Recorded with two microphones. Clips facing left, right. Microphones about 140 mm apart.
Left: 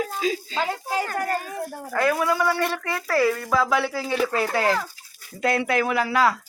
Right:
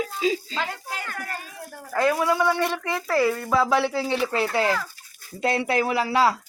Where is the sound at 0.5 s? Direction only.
30° left (ahead or behind); by 1.6 s 45° left (ahead or behind).